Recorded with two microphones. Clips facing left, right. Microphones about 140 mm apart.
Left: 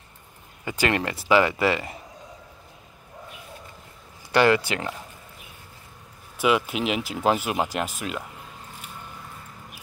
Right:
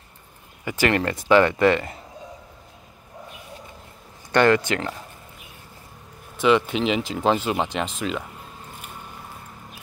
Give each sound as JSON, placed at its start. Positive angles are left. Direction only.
{"t": 0.7, "sound": "speech", "side_deg": 20}
{"t": 1.3, "sound": "speech", "side_deg": 5}
{"t": 4.3, "sound": "speech", "side_deg": 10}
{"t": 6.3, "sound": "speech", "side_deg": 5}